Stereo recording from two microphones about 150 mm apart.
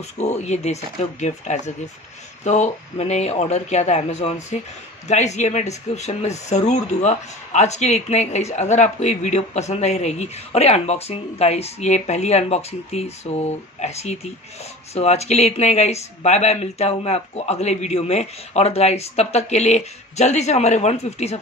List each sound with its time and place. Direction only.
0.2 s speech: 50° left (ahead or behind)